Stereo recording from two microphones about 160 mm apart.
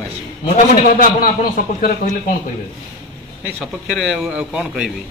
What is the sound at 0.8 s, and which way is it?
Speech, 60° left (ahead or behind).